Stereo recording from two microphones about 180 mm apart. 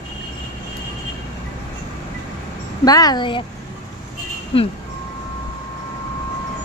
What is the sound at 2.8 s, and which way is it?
Speech, 20° left (ahead or behind).